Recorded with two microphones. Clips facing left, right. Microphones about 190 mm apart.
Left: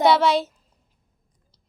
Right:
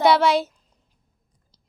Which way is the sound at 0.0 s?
Centre (ahead or behind).